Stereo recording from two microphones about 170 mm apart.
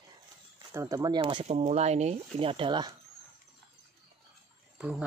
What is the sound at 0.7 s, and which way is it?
Speech, 20° right (ahead or behind).